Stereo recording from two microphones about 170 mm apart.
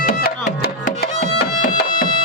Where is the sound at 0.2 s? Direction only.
65° left (ahead or behind).